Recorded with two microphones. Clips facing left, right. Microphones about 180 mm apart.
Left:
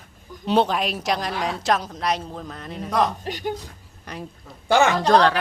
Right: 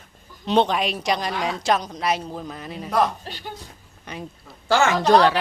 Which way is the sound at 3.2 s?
15° left (ahead or behind).